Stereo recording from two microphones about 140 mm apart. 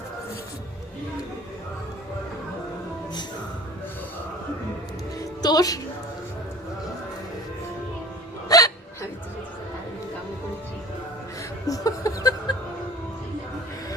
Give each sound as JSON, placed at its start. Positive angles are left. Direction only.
{"t": 5.4, "sound": "speech", "side_deg": 30}
{"t": 8.4, "sound": "hiccup", "side_deg": 25}
{"t": 11.6, "sound": "a sound", "side_deg": 25}